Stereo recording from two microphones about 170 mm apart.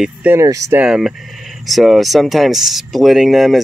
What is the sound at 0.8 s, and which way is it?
Speech, 5° right (ahead or behind).